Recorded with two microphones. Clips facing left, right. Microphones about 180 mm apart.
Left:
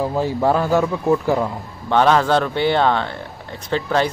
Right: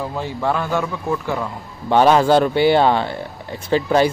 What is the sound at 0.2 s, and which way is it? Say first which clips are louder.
A man's voice: left 3 dB; 35° left (ahead or behind).